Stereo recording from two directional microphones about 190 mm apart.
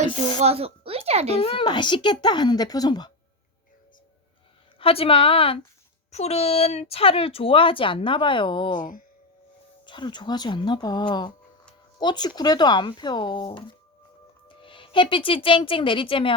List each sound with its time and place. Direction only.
0.3 s speech: 35° right (ahead or behind)
1.4 s speech: 30° left (ahead or behind)
4.8 s speech: 30° left (ahead or behind)
8.8 s speech: 45° left (ahead or behind)
9.8 s speech: 25° left (ahead or behind)